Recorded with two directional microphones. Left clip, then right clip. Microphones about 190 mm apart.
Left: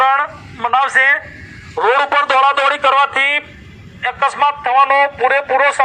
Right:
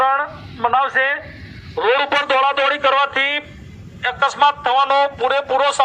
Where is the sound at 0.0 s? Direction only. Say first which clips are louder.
Left 4 dB; 20° left (ahead or behind).